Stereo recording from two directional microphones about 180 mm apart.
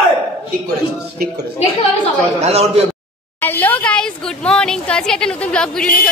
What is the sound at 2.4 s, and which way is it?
Speech, 35° right (ahead or behind).